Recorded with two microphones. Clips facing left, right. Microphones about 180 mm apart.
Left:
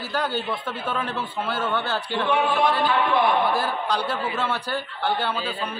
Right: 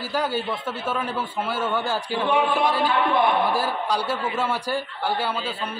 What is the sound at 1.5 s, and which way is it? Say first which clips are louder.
A man's voice: even; 10° right (ahead or behind).